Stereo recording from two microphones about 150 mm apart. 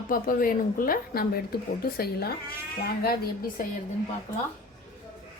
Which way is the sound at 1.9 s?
90° left.